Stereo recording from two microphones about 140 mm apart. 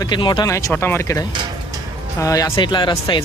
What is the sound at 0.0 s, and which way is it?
Speech, 35° left (ahead or behind).